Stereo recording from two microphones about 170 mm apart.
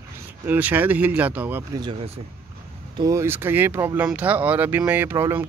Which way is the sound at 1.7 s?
25° right (ahead or behind).